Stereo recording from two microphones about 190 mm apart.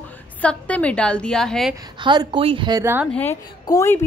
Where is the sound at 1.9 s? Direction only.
25° right (ahead or behind).